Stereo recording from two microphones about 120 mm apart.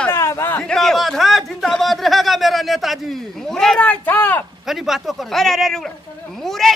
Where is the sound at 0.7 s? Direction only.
5° left (ahead or behind).